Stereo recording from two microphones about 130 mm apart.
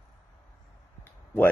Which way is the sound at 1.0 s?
15° left (ahead or behind).